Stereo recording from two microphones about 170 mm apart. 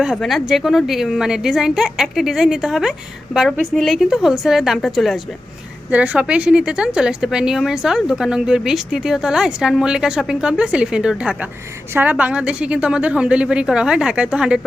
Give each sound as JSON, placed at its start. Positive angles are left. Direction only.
{"t": 0.0, "sound": "a woman's voice", "side_deg": 0}